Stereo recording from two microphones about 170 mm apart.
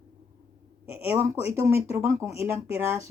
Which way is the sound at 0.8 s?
15° right (ahead or behind).